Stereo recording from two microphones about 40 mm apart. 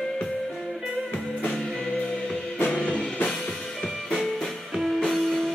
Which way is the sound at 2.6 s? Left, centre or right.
Centre.